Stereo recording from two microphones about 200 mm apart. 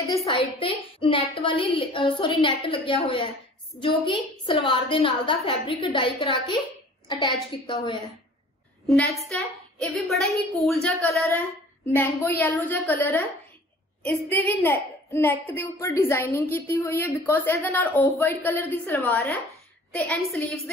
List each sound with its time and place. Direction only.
0.6 s a woman's voice: 25° left (ahead or behind)
8.8 s a woman's voice: centre (ahead or behind)